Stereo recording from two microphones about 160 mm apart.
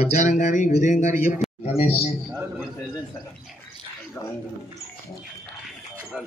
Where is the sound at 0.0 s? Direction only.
45° left (ahead or behind).